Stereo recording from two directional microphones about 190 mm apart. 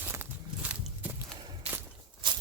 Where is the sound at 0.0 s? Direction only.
10° right (ahead or behind).